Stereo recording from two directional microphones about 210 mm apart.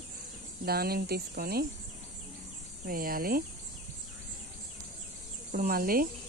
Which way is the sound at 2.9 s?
45° right (ahead or behind).